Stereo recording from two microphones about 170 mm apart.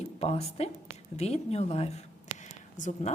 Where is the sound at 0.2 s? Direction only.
35° left (ahead or behind).